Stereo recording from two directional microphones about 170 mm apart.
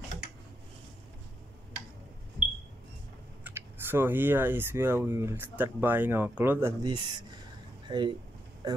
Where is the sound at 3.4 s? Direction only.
10° right (ahead or behind).